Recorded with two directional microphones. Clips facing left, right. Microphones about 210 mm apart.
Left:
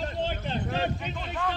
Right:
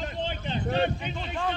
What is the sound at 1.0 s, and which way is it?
Speech, centre (ahead or behind).